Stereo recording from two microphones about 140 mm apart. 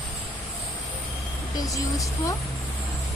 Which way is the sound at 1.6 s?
25° left (ahead or behind).